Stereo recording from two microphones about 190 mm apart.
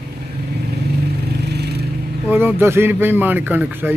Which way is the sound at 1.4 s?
60° right (ahead or behind).